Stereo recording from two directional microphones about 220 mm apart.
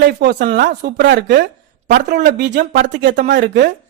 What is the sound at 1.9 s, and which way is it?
Speech, 40° right (ahead or behind).